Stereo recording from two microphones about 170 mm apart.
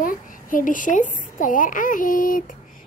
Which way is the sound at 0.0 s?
55° left (ahead or behind).